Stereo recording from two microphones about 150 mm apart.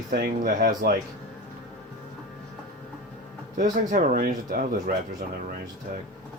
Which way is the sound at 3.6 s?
65° right (ahead or behind).